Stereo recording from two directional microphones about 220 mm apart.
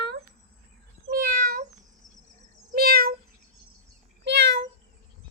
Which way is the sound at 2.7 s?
45° right (ahead or behind).